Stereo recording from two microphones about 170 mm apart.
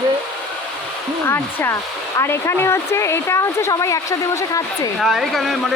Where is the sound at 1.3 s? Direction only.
15° left (ahead or behind).